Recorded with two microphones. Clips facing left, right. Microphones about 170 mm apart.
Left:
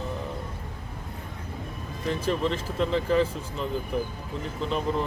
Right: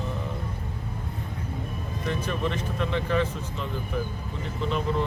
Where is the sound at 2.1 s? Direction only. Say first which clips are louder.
Left 3 dB; 30° left (ahead or behind).